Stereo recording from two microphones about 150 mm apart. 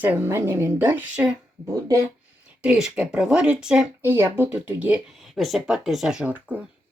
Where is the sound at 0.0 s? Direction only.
10° right (ahead or behind).